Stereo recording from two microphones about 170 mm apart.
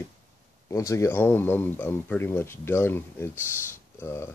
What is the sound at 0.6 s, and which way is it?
Speech, 15° left (ahead or behind).